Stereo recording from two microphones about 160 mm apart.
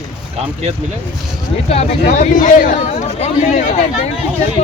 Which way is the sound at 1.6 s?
40° left (ahead or behind).